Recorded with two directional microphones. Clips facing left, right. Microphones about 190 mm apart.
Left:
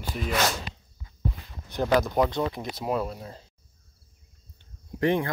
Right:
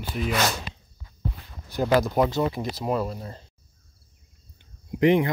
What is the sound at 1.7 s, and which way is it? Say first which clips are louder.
Speech: right 2 dB; 5° right (ahead or behind).